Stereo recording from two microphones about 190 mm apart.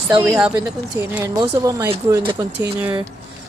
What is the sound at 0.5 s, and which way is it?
Speech, 15° right (ahead or behind).